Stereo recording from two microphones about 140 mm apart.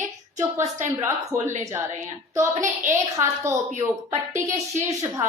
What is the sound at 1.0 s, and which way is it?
Speech, 20° right (ahead or behind).